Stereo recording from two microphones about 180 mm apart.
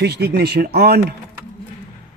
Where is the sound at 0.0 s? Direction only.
65° right (ahead or behind).